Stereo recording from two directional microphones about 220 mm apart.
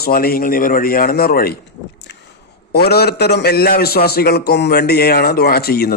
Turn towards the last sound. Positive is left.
turn(degrees=45)  # may be behind; listen again after turning